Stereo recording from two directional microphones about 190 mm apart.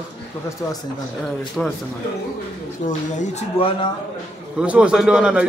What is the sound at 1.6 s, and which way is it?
Speech, 5° left (ahead or behind).